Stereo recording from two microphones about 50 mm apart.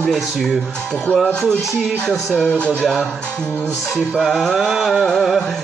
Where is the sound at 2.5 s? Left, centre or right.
Left.